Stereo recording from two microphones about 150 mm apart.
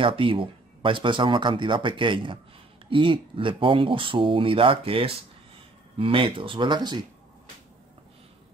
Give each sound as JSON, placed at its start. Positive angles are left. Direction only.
{"t": 0.0, "sound": "speech", "side_deg": -35}